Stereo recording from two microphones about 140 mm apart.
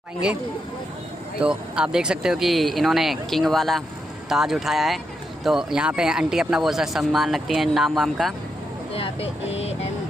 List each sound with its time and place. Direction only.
1.4 s speech: 5° right (ahead or behind)
8.9 s music: 45° left (ahead or behind)